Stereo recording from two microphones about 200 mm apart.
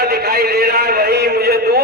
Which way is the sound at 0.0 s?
50° right (ahead or behind).